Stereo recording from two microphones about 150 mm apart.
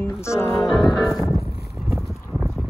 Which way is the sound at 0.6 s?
Centre (ahead or behind).